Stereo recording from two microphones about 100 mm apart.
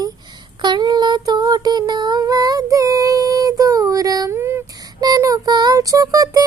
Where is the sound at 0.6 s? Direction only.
45° right (ahead or behind).